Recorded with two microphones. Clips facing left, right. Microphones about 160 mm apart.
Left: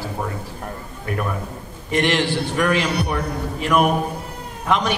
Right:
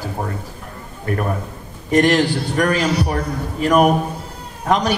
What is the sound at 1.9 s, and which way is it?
Speech, 40° right (ahead or behind).